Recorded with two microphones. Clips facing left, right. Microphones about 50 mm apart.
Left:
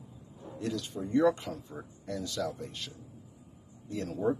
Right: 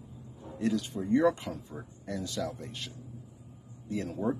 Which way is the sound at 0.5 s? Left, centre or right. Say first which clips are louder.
Right 4 dB; centre.